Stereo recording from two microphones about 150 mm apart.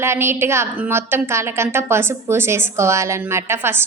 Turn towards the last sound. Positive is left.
turn(degrees=-15)  # may be behind; listen again after turning